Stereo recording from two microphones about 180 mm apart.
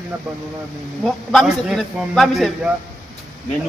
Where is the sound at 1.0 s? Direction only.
Centre (ahead or behind).